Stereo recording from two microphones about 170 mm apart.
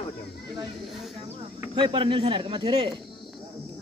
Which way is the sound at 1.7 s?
30° right (ahead or behind).